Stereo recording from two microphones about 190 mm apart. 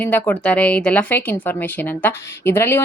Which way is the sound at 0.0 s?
10° left (ahead or behind).